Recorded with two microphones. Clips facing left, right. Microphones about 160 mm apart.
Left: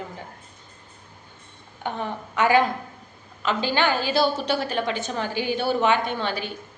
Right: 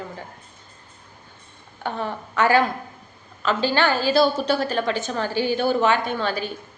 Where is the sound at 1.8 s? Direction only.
15° left (ahead or behind).